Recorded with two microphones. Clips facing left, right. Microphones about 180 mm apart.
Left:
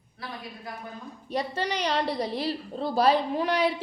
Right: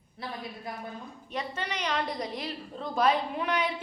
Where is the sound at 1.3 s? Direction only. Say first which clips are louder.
Left 6 dB; 35° left (ahead or behind).